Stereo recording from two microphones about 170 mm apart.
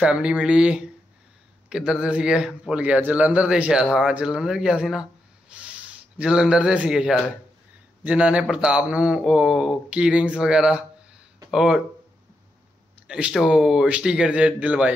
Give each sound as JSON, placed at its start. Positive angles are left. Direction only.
{"t": 0.0, "sound": "a man's voice", "side_deg": -5}
{"t": 13.0, "sound": "a man's voice", "side_deg": -5}